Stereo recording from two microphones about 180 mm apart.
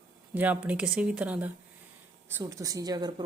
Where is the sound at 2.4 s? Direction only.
20° right (ahead or behind).